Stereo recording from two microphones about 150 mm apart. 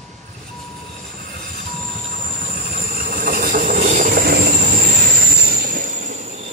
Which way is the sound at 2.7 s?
85° right.